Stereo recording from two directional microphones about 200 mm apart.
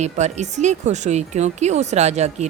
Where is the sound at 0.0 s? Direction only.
35° right (ahead or behind).